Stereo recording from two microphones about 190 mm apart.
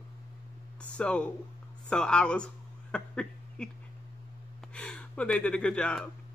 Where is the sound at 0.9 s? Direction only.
5° left (ahead or behind).